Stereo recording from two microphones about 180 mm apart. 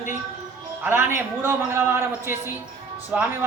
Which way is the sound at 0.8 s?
10° right (ahead or behind).